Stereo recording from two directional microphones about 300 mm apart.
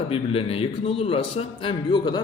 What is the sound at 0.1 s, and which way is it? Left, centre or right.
A man's voice, centre.